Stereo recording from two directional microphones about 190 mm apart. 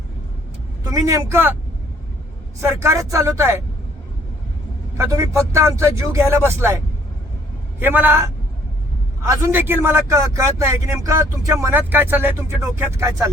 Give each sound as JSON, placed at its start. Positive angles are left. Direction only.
{"t": 0.9, "sound": "a man's voice", "side_deg": -20}
{"t": 2.6, "sound": "a man's voice", "side_deg": -15}
{"t": 4.9, "sound": "a man's voice", "side_deg": -15}